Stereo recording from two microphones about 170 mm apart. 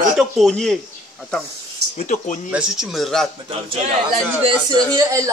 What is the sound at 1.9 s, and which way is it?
Speech, 45° left (ahead or behind).